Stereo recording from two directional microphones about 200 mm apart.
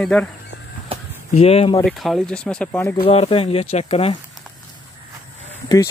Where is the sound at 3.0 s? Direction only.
30° left (ahead or behind).